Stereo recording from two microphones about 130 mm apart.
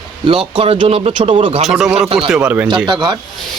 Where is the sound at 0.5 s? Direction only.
45° right (ahead or behind).